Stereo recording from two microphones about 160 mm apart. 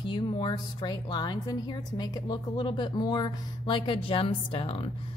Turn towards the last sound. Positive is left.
turn(degrees=35)  # may be behind; listen again after turning